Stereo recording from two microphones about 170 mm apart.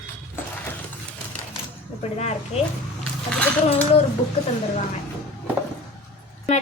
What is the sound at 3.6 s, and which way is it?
Speech, 40° left (ahead or behind).